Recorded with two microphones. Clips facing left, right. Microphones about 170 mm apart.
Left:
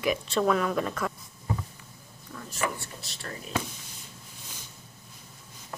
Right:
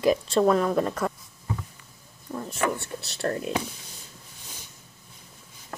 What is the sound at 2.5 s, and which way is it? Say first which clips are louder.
Speech: right 4 dB; 65° right (ahead or behind).